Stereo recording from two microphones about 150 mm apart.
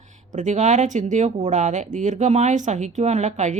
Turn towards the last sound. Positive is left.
turn(degrees=-50)  # may be behind; listen again after turning